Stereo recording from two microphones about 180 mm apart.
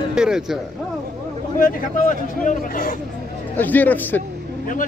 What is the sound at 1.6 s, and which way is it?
Speech, 45° left (ahead or behind).